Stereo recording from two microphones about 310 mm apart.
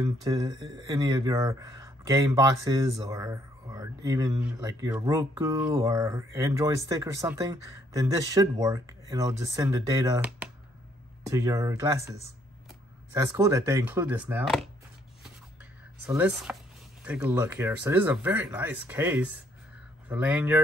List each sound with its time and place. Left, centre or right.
0.0 s speech: centre
16.1 s speech: centre